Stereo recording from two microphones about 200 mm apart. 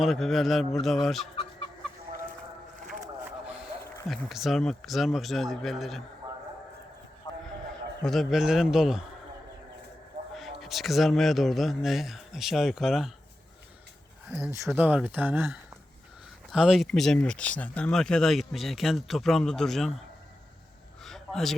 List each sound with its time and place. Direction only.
0.0 s speech: centre (ahead or behind)
4.1 s speech: centre (ahead or behind)
7.3 s horse: 20° left (ahead or behind)
7.7 s a man's voice: centre (ahead or behind)
10.3 s speech: centre (ahead or behind)
14.3 s speech: 10° right (ahead or behind)
21.0 s a sound: centre (ahead or behind)